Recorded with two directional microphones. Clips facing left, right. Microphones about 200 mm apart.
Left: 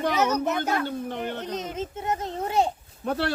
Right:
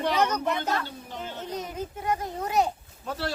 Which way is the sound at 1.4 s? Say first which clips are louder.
Left 2 dB; 20° left (ahead or behind).